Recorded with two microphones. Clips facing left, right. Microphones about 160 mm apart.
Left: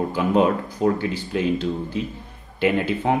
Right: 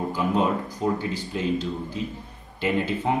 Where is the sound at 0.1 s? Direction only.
70° left (ahead or behind).